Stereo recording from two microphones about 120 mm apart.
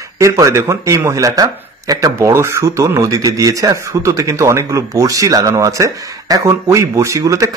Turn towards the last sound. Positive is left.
turn(degrees=-25)  # may be behind; listen again after turning